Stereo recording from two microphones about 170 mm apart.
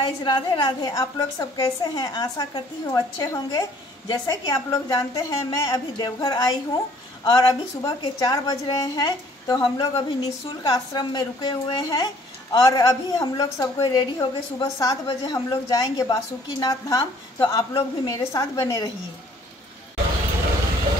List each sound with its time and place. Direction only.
0.0 s a woman's voice: 25° left (ahead or behind)